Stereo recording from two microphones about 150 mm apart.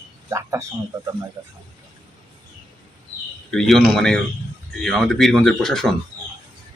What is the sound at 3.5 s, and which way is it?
Speech, 5° left (ahead or behind).